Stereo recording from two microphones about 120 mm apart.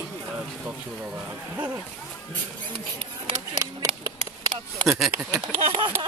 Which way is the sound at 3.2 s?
40° right (ahead or behind).